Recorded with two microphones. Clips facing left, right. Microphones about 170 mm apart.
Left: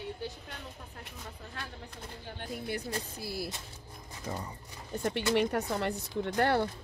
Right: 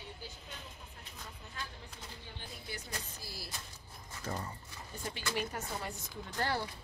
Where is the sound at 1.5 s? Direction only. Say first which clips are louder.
Left 1 dB; 60° left (ahead or behind).